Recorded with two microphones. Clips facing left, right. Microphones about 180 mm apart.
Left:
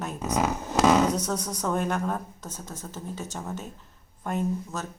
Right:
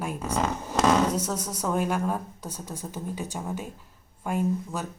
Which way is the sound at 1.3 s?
5° right (ahead or behind).